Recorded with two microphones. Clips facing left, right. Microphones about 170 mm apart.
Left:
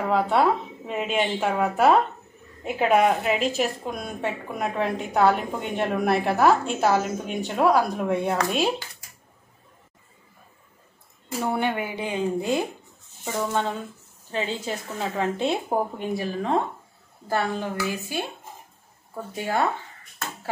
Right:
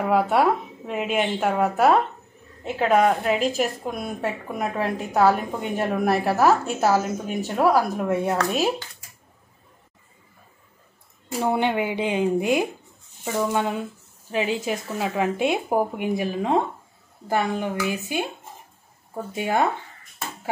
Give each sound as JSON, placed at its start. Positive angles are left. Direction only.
{"t": 0.1, "sound": "a woman's voice", "side_deg": -10}
{"t": 2.8, "sound": "a woman's voice", "side_deg": 10}
{"t": 11.4, "sound": "speech", "side_deg": -20}
{"t": 19.3, "sound": "speech", "side_deg": -15}